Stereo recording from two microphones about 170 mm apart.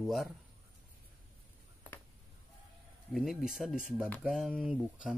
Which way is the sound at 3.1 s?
Centre (ahead or behind).